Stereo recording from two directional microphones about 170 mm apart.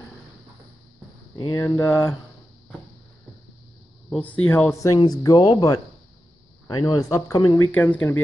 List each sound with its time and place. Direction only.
1.3 s speech: 25° left (ahead or behind)
4.1 s speech: 10° left (ahead or behind)